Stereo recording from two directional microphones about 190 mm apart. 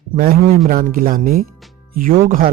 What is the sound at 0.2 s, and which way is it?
Speech, 50° right (ahead or behind).